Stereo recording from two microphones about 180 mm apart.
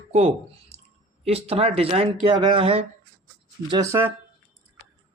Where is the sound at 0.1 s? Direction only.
35° right (ahead or behind).